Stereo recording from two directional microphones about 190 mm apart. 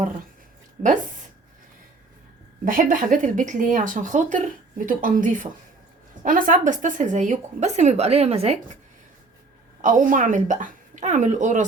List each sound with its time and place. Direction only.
2.6 s a woman's voice: 45° right (ahead or behind)
9.8 s a woman's voice: 45° right (ahead or behind)